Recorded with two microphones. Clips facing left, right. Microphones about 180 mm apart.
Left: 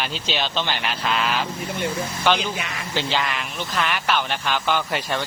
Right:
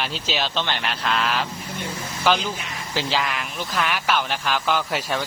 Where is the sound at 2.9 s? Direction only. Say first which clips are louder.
Even; 5° right (ahead or behind).